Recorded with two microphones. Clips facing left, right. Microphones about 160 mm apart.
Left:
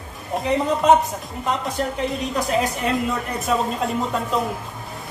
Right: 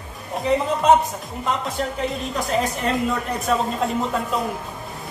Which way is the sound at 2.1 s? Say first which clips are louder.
Left 2 dB; centre (ahead or behind).